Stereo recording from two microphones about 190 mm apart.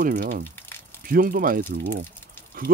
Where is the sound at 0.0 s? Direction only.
45° right (ahead or behind).